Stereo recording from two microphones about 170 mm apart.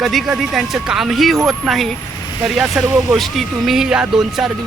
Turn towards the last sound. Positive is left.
turn(degrees=-5)  # may be behind; listen again after turning